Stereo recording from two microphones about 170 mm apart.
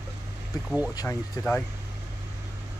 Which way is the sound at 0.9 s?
20° left (ahead or behind).